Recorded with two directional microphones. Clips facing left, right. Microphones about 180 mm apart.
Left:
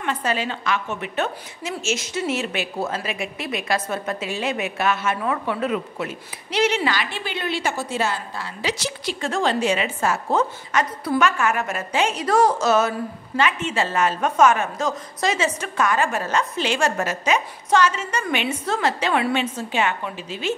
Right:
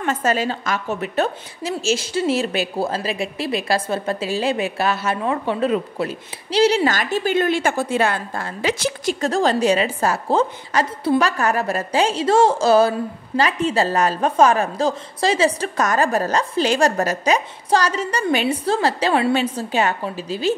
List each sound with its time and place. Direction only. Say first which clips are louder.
0.0 s a woman's voice: right 4 dB; 45° right (ahead or behind)